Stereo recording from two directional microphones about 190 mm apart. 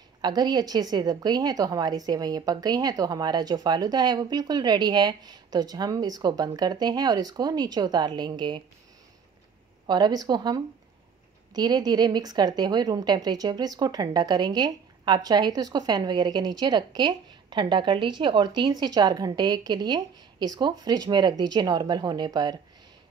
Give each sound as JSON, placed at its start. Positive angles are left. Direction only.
{"t": 0.2, "sound": "a woman's voice", "side_deg": -20}
{"t": 9.8, "sound": "a woman's voice", "side_deg": -20}